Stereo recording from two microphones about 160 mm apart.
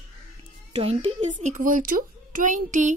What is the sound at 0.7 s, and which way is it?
A woman's voice, 40° right (ahead or behind).